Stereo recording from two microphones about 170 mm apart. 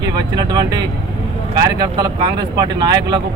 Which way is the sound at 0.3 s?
25° right (ahead or behind).